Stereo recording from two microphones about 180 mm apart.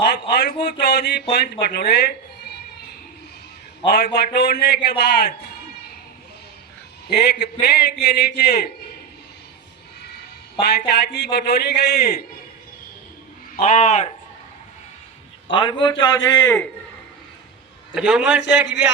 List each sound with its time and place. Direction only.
0.1 s a man's voice: 65° left (ahead or behind)
3.8 s a man's voice: 65° left (ahead or behind)
7.1 s a man's voice: 60° left (ahead or behind)
10.6 s a man's voice: 65° left (ahead or behind)
13.6 s a man's voice: 40° left (ahead or behind)
15.4 s a man's voice: 30° left (ahead or behind)
17.9 s a man's voice: 5° right (ahead or behind)